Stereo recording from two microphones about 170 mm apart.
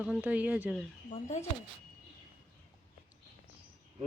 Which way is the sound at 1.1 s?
40° left (ahead or behind).